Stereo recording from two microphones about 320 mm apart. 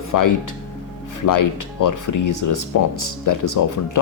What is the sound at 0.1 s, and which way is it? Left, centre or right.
Speech, left.